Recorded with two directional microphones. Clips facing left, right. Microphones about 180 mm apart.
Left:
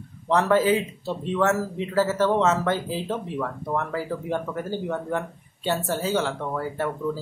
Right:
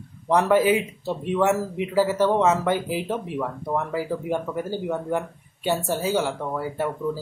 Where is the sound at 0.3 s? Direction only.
15° right (ahead or behind).